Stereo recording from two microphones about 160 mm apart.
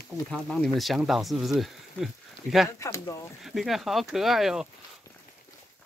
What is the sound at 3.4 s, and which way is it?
Speech, centre (ahead or behind).